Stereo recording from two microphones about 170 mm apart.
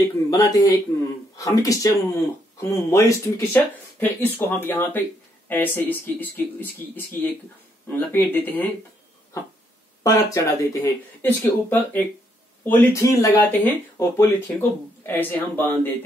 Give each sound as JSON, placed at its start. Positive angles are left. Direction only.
{"t": 0.0, "sound": "speech", "side_deg": 20}
{"t": 10.0, "sound": "speech", "side_deg": 20}